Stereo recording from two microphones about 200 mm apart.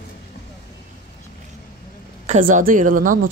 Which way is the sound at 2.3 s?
35° right (ahead or behind).